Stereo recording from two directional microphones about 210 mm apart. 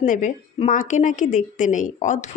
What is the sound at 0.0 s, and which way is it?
A woman's voice, 40° left (ahead or behind).